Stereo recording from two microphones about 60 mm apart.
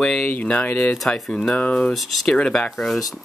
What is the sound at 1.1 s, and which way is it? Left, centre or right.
Speech, centre.